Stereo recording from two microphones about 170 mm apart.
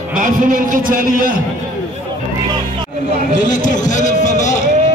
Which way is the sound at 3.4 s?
50° left (ahead or behind).